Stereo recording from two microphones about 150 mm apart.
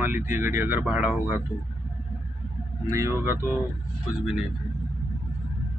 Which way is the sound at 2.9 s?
20° right (ahead or behind).